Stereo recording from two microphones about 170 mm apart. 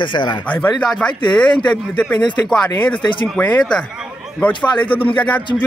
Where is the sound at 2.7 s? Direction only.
30° left (ahead or behind).